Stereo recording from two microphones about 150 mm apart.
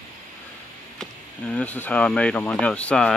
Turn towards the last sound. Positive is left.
turn(degrees=5)  # may be behind; listen again after turning